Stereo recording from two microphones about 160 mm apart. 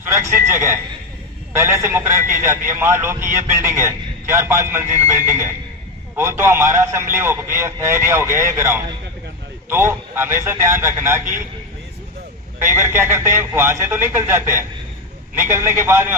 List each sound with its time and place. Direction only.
0.1 s a man's voice: 15° right (ahead or behind)
12.5 s a man's voice: 15° right (ahead or behind)